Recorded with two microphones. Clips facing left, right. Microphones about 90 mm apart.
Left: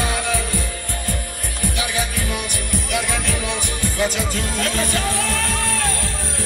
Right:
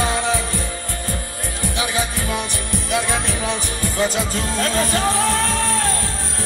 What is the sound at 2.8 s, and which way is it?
Speech, 30° right (ahead or behind).